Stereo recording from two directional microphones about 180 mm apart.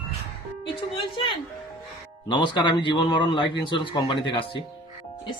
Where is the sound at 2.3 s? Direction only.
25° left (ahead or behind).